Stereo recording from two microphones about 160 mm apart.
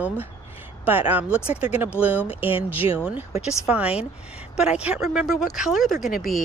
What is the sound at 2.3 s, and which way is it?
Speech, 35° left (ahead or behind).